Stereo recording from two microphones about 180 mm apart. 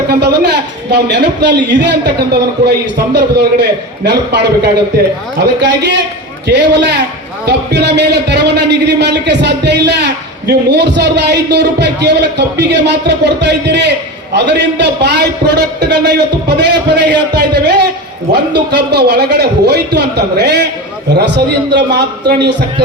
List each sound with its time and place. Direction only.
0.1 s a man's voice: 65° right (ahead or behind)